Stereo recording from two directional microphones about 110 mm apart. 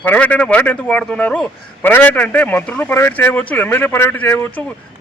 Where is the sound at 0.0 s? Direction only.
15° left (ahead or behind).